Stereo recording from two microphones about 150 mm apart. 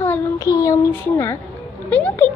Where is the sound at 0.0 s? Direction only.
20° left (ahead or behind).